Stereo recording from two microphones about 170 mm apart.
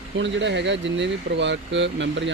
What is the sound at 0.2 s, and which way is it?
Speech, 90° right.